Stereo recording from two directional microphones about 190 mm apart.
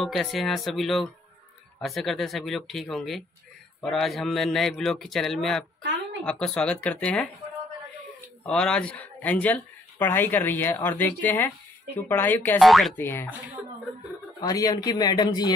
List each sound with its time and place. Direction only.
0.0 s a man's voice: centre (ahead or behind)
8.5 s speech: 5° left (ahead or behind)
12.9 s speech: 10° left (ahead or behind)
14.4 s speech: 20° left (ahead or behind)